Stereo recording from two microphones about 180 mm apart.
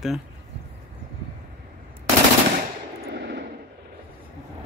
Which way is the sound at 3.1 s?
70° right (ahead or behind).